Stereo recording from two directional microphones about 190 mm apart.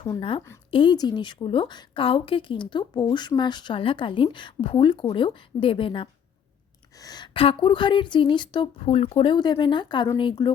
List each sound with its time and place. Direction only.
0.0 s a woman's voice: 25° left (ahead or behind)